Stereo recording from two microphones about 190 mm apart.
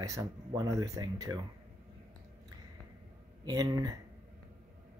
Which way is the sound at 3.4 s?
20° right (ahead or behind).